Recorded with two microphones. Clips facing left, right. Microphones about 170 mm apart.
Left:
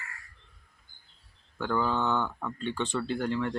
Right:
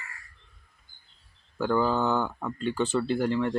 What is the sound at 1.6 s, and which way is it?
Speech, 5° right (ahead or behind).